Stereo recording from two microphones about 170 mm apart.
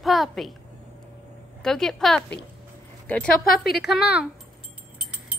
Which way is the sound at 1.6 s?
5° left (ahead or behind).